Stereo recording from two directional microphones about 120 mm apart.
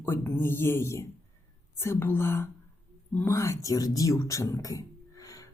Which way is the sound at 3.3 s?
25° left (ahead or behind).